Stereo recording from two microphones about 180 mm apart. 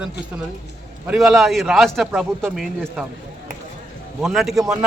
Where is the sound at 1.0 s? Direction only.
Centre (ahead or behind).